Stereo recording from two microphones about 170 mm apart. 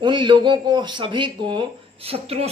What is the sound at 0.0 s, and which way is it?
Speech, 25° right (ahead or behind).